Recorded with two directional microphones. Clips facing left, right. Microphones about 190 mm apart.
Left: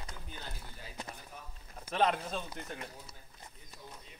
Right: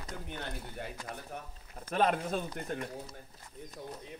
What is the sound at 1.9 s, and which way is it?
Speech, 50° right (ahead or behind).